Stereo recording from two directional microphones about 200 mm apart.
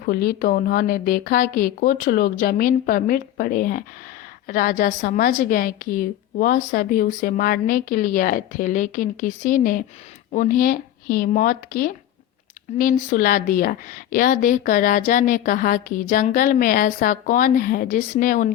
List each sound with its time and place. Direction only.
0.0 s a woman's voice: 50° left (ahead or behind)